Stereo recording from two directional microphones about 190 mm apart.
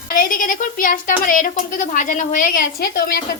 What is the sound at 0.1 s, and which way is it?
A woman's voice, 45° left (ahead or behind).